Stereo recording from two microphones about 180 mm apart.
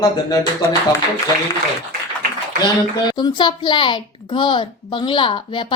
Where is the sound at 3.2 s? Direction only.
25° left (ahead or behind).